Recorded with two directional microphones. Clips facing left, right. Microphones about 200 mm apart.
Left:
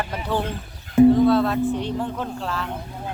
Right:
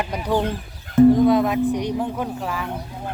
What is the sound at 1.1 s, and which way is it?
Speech, 15° right (ahead or behind).